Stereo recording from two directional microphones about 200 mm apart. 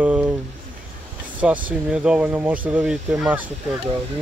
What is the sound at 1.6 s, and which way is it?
Speech, 5° right (ahead or behind).